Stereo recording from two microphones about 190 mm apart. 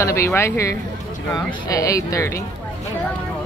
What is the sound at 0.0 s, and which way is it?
Speech, 15° left (ahead or behind).